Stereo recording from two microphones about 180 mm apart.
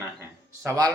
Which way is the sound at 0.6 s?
20° right (ahead or behind).